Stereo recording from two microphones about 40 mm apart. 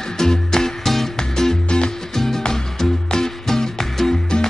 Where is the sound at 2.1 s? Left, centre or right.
Centre.